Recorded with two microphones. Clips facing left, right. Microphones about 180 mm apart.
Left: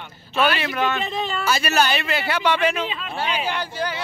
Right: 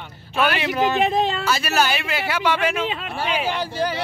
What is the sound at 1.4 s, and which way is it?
A man's voice, centre (ahead or behind).